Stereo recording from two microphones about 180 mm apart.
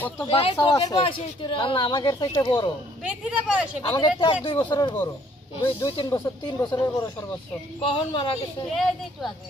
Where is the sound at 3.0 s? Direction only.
5° right (ahead or behind).